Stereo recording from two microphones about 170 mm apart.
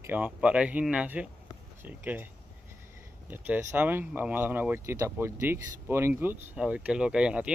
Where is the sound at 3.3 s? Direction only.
10° right (ahead or behind).